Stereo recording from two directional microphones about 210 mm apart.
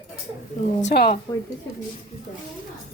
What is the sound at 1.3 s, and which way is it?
Speech, 20° left (ahead or behind).